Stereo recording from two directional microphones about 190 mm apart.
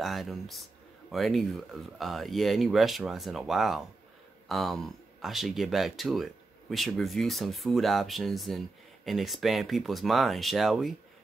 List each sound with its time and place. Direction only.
0.0 s speech: centre (ahead or behind)